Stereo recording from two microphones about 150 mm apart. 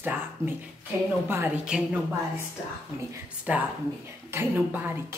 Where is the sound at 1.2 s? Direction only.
15° right (ahead or behind).